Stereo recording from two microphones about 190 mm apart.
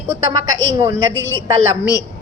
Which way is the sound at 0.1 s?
15° right (ahead or behind).